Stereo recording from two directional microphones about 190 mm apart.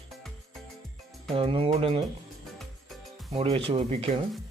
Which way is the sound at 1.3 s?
30° right (ahead or behind).